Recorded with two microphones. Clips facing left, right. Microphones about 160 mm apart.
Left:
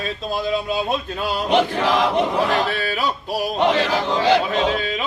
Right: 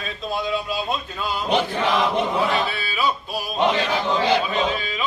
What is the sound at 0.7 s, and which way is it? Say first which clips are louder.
Music: left 4 dB; 75° left (ahead or behind).